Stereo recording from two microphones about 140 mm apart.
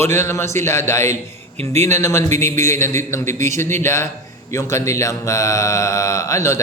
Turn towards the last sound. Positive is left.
turn(degrees=20)  # may be behind; listen again after turning